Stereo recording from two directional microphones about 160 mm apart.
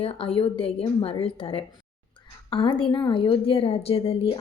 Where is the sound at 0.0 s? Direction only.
35° left (ahead or behind).